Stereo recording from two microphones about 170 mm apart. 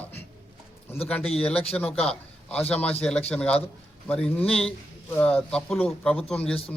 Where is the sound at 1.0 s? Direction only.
5° left (ahead or behind).